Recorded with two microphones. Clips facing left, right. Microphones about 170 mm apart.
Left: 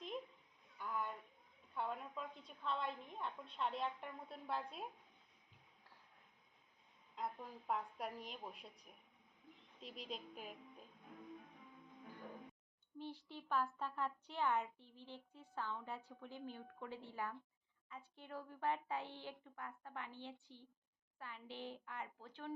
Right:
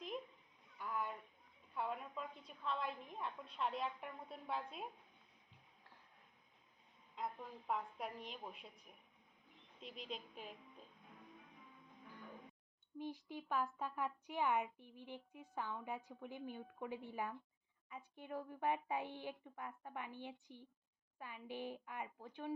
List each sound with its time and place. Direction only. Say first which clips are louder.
0.8 s a sound: right 1 dB; 5° right (ahead or behind)
3.5 s a woman's voice: even; centre (ahead or behind)
7.2 s a woman's voice: even; centre (ahead or behind)
9.8 s a woman's voice: even; centre (ahead or behind)
13.0 s a woman's voice: right 3 dB; 10° right (ahead or behind)